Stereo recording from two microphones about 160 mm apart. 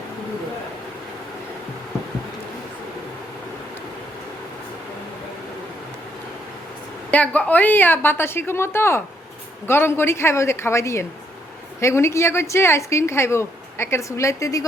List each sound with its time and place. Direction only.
7.1 s a woman's voice: 10° left (ahead or behind)